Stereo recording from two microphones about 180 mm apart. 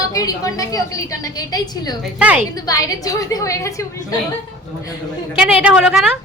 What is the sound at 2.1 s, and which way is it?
Speech, 5° right (ahead or behind).